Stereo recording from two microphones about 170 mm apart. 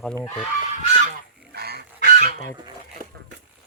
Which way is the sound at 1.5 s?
70° right (ahead or behind).